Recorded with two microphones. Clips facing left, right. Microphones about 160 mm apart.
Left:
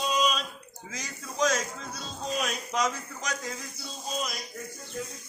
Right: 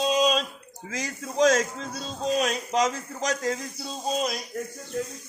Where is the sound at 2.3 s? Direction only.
35° right (ahead or behind).